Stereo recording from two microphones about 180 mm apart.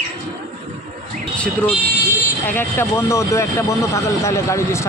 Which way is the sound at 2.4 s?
10° left (ahead or behind).